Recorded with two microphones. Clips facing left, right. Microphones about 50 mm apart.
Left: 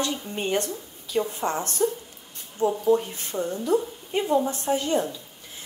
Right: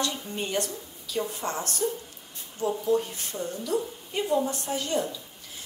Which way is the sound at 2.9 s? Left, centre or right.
Left.